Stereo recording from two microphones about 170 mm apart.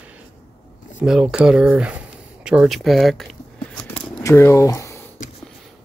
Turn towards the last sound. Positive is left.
turn(degrees=20)  # may be behind; listen again after turning